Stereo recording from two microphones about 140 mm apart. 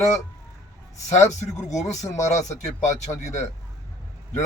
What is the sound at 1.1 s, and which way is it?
A man's voice, 55° left (ahead or behind).